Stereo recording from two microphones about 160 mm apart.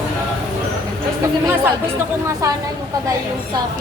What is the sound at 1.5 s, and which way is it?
Speech, 15° right (ahead or behind).